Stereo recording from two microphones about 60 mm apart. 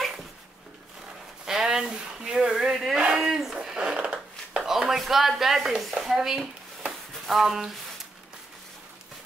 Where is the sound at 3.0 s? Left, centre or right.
Centre.